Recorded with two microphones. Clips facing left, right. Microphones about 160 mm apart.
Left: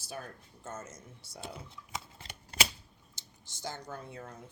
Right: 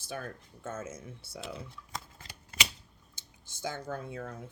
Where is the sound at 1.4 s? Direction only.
90° right.